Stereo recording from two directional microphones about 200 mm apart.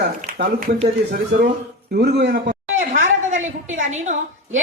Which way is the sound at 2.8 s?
40° right (ahead or behind).